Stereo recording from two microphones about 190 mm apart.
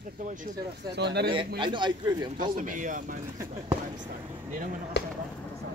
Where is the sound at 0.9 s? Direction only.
60° right (ahead or behind).